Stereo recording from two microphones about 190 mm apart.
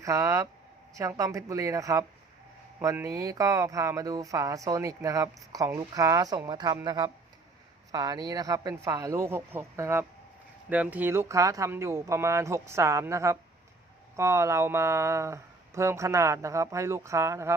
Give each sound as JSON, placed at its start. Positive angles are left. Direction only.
{"t": 0.0, "sound": "speech", "side_deg": -15}